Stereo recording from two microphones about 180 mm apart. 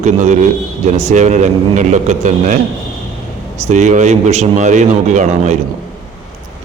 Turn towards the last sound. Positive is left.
turn(degrees=-40)  # may be behind; listen again after turning